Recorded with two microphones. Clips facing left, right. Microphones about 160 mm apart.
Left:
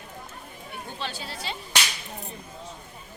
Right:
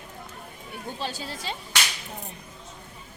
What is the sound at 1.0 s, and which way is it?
Speech, 40° right (ahead or behind).